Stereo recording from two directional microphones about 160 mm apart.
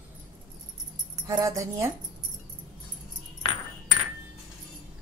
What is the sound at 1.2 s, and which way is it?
Speech, 20° right (ahead or behind).